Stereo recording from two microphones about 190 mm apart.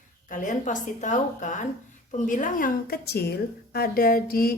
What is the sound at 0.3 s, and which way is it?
A woman's voice, 45° left (ahead or behind).